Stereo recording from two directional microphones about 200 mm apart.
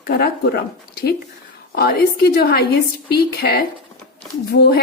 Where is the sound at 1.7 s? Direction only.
50° left (ahead or behind).